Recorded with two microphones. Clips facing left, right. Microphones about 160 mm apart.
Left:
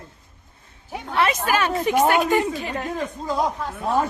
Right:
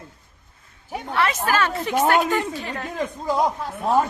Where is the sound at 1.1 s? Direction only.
20° left (ahead or behind).